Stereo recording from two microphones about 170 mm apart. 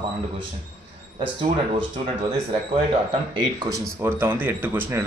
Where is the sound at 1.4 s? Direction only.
35° right (ahead or behind).